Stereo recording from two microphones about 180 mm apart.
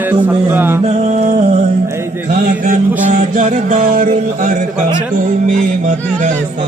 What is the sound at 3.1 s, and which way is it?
Mantra, 45° right (ahead or behind).